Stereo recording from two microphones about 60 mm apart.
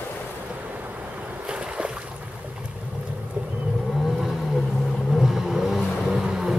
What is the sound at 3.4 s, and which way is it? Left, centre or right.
Vehicle, right.